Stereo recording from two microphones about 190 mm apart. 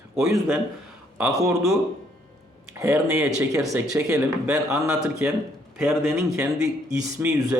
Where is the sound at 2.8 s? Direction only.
15° right (ahead or behind).